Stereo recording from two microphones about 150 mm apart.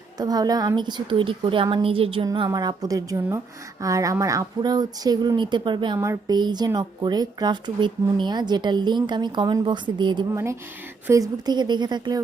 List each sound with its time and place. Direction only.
0.2 s a woman's voice: 25° right (ahead or behind)
10.3 s a woman's voice: 20° right (ahead or behind)